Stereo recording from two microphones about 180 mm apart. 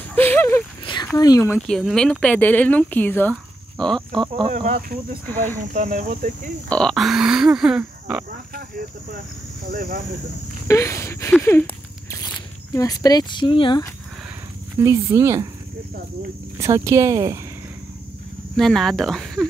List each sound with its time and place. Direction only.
0.1 s a sound: 10° left (ahead or behind)
0.8 s speech: 20° left (ahead or behind)
1.7 s speech: centre (ahead or behind)
4.5 s speech: 35° right (ahead or behind)
4.7 s speech: 50° right (ahead or behind)
5.2 s a sound: 10° left (ahead or behind)
5.6 s speech: 45° right (ahead or behind)
6.7 s speech: centre (ahead or behind)
10.7 s a sound: 15° left (ahead or behind)
11.4 s speech: 10° left (ahead or behind); by 13.8 s 25° left (ahead or behind)
14.8 s speech: 15° right (ahead or behind)
16.5 s speech: 15° right (ahead or behind)
18.6 s speech: centre (ahead or behind)